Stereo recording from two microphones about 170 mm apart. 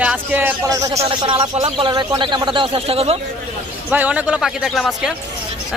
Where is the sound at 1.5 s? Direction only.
40° right (ahead or behind).